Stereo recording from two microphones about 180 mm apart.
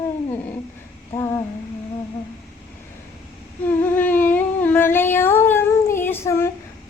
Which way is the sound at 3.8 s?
10° left (ahead or behind).